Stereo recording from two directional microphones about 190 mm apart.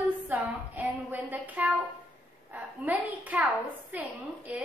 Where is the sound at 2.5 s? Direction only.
10° right (ahead or behind).